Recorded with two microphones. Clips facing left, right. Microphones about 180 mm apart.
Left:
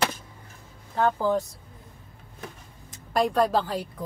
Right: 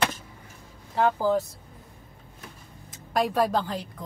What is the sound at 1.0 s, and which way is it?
Speech, 10° right (ahead or behind).